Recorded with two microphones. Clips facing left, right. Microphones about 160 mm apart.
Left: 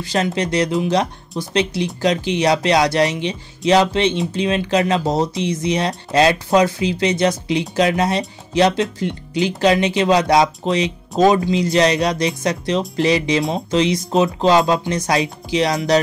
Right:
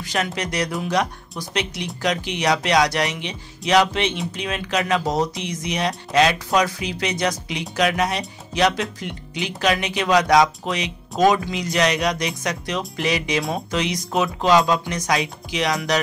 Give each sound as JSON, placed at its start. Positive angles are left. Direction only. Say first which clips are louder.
{"t": 0.0, "sound": "speech", "louder": "left 5 dB", "side_deg": 30}